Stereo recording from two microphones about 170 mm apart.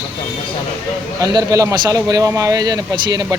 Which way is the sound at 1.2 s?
20° right (ahead or behind).